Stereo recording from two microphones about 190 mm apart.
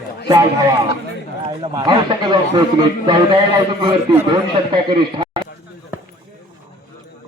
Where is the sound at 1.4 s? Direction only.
25° right (ahead or behind).